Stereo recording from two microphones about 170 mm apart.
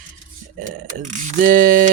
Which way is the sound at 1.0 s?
50° right (ahead or behind).